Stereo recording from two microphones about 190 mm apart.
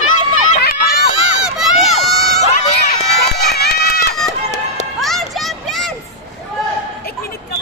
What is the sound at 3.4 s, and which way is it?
Run, 60° left (ahead or behind).